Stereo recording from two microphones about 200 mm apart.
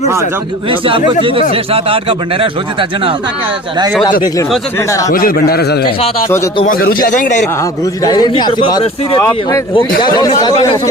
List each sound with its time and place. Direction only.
0.7 s speech: 25° right (ahead or behind)
4.9 s speech: 15° left (ahead or behind)
5.1 s speech: 45° left (ahead or behind)
8.0 s a man's voice: 20° left (ahead or behind)